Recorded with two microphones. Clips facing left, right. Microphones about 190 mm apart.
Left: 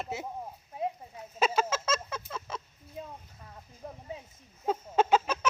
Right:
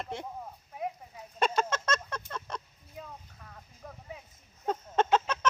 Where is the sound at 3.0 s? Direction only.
25° left (ahead or behind).